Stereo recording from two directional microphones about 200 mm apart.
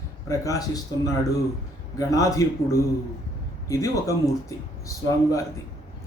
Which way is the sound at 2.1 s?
15° left (ahead or behind).